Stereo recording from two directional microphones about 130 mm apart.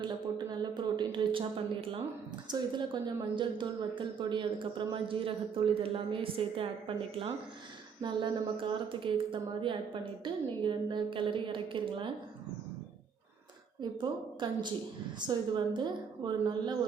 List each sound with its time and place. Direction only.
0.0 s a sound: 35° right (ahead or behind)
2.5 s a woman's voice: 35° right (ahead or behind)
14.0 s a woman's voice: 35° right (ahead or behind)